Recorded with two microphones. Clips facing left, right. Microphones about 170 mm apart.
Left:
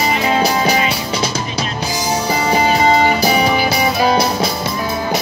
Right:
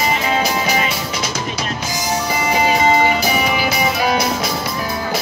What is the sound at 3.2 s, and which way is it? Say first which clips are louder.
Music: left 4 dB; 35° left (ahead or behind).